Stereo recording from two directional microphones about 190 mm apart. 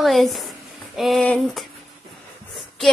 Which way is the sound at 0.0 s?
Centre (ahead or behind).